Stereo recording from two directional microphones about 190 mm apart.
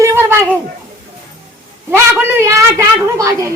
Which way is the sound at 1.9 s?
10° right (ahead or behind).